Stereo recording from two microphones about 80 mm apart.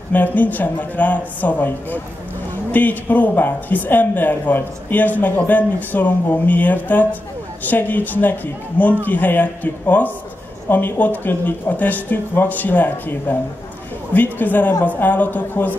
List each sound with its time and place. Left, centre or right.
0.1 s a woman's voice: left